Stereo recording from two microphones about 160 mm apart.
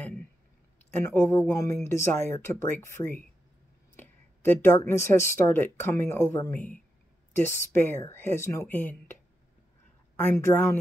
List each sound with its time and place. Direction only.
0.0 s a sound: 10° left (ahead or behind)
0.9 s speech: 15° left (ahead or behind)
10.3 s speech: 15° left (ahead or behind)